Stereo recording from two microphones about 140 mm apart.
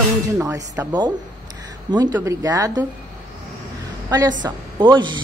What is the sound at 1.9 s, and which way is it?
Speech, 25° right (ahead or behind).